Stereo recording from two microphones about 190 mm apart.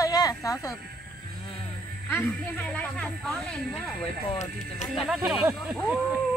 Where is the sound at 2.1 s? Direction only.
10° left (ahead or behind).